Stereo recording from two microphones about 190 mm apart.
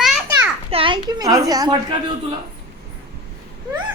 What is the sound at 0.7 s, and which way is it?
A woman's voice, 25° right (ahead or behind).